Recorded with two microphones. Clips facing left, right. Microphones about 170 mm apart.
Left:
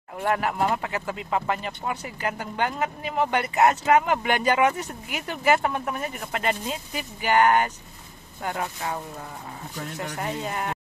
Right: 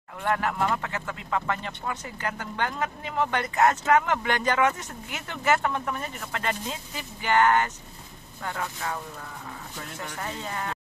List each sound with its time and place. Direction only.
0.2 s speech: 15° left (ahead or behind)
10.0 s speech: 15° left (ahead or behind)